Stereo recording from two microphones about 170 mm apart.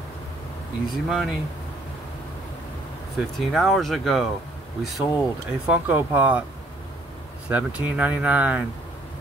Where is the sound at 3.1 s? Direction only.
Centre (ahead or behind).